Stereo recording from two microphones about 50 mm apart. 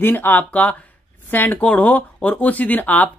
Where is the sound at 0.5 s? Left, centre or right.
Left.